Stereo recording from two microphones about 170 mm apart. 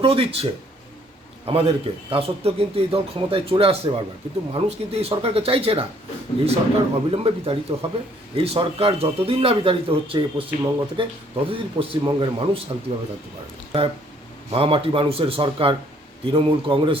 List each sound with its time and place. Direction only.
0.0 s speech: 35° right (ahead or behind)
1.5 s speech: 35° right (ahead or behind)
14.5 s speech: 35° right (ahead or behind)